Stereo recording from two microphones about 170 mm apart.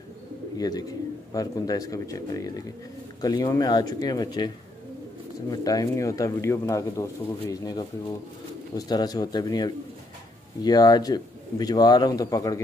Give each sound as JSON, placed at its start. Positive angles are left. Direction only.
{"t": 0.6, "sound": "speech", "side_deg": 20}
{"t": 5.5, "sound": "speech", "side_deg": 20}